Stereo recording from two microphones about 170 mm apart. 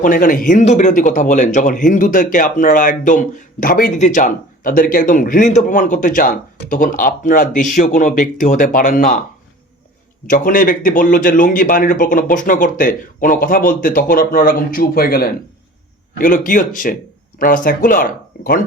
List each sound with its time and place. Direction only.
0.0 s speech: 55° left (ahead or behind)
10.2 s speech: 55° left (ahead or behind)